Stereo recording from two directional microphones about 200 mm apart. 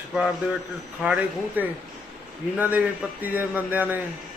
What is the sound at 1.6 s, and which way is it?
A man's voice, 10° right (ahead or behind).